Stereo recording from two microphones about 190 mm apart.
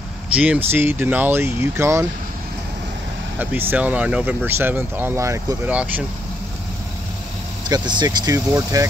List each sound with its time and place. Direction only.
0.3 s speech: 5° right (ahead or behind)
3.7 s speech: 10° right (ahead or behind)
7.6 s speech: 25° right (ahead or behind)